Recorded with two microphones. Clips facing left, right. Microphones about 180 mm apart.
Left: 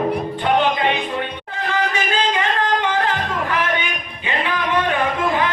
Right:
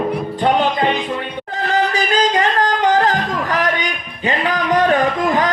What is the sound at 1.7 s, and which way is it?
Music, 40° right (ahead or behind).